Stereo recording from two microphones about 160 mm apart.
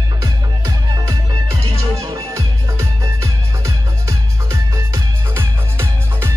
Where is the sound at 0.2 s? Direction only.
20° right (ahead or behind).